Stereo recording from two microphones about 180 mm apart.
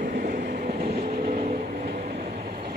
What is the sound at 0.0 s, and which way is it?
Train, 50° right (ahead or behind).